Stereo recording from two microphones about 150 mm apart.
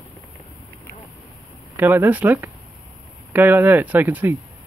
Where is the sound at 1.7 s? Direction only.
15° right (ahead or behind).